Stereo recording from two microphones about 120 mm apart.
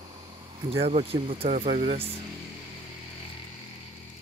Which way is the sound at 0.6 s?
55° right (ahead or behind).